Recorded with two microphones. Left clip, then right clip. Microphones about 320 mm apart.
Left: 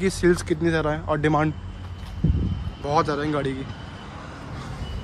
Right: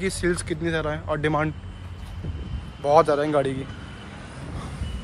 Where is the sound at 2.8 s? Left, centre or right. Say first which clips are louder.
Right 5 dB; centre.